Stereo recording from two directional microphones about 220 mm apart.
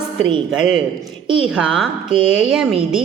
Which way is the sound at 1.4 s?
5° right (ahead or behind).